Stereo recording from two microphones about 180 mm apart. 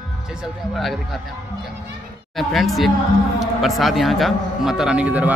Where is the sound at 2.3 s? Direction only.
Centre (ahead or behind).